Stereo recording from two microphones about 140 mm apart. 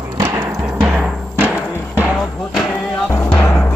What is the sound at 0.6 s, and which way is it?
Music, 5° right (ahead or behind).